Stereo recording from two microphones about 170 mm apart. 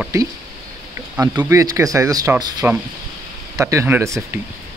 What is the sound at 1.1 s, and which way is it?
Speech, 20° right (ahead or behind).